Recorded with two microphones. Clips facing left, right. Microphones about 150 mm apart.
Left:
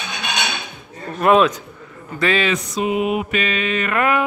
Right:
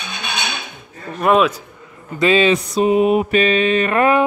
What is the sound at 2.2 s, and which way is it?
Mantra, 20° right (ahead or behind).